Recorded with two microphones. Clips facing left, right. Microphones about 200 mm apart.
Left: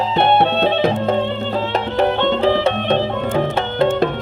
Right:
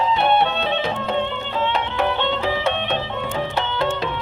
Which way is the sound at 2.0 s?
45° left (ahead or behind).